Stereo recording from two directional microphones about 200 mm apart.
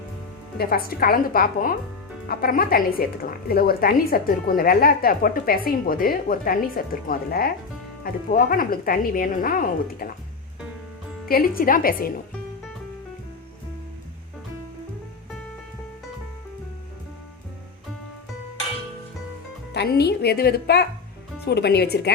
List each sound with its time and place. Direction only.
0.5 s speech: 50° left (ahead or behind)
11.3 s speech: 45° left (ahead or behind)
19.7 s speech: 55° left (ahead or behind)